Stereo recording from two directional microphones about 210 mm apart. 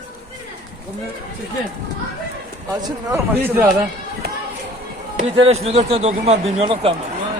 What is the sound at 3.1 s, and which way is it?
Speech, 10° right (ahead or behind).